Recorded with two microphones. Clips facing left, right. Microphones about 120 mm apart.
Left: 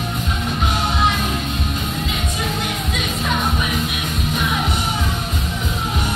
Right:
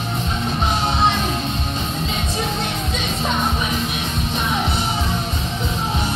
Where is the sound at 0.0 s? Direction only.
30° right (ahead or behind).